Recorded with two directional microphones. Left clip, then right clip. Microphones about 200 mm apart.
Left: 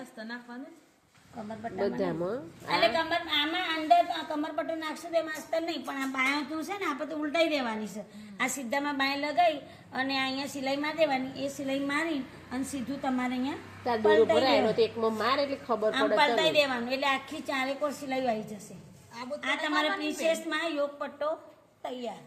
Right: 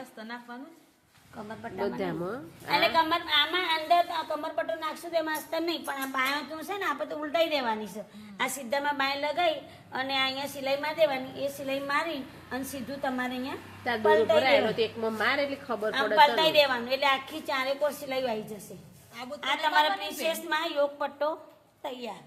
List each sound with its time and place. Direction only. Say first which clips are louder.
1.8 s a woman's voice: left 1 dB; 5° right (ahead or behind)
2.8 s speech: right 1 dB; 45° right (ahead or behind)
14.3 s a woman's voice: right 1 dB; centre (ahead or behind)
16.1 s a woman's voice: right 5 dB; 45° right (ahead or behind)
19.4 s a woman's voice: right 4 dB; 50° right (ahead or behind)